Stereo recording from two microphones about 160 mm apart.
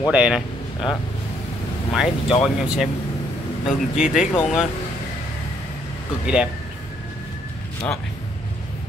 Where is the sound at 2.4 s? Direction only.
Centre (ahead or behind).